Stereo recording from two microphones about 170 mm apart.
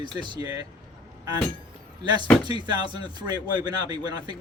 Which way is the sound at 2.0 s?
25° right (ahead or behind).